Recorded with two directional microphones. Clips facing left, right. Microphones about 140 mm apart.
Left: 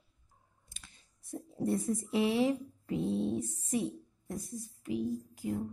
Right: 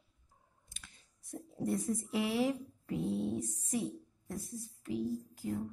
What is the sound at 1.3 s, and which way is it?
A woman's voice, 30° left (ahead or behind).